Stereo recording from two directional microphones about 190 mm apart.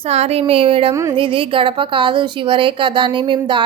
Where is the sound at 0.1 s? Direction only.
35° right (ahead or behind).